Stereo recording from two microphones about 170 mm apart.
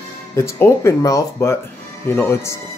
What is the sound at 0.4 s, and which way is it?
Speech, 15° left (ahead or behind).